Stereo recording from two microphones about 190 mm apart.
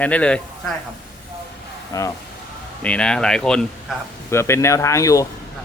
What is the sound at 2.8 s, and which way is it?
A man's voice, 5° left (ahead or behind).